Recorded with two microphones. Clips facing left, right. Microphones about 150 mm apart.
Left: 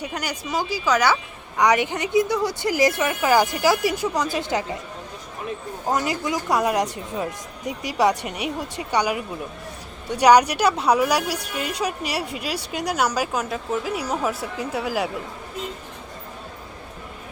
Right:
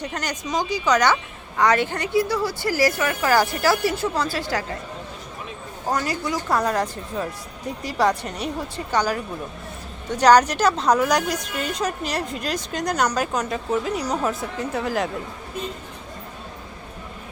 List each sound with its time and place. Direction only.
0.0 s a woman's voice: 10° left (ahead or behind)
5.9 s a woman's voice: 20° left (ahead or behind)